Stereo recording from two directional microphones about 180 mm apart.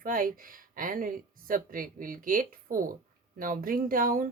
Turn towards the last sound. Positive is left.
turn(degrees=-50)  # may be behind; listen again after turning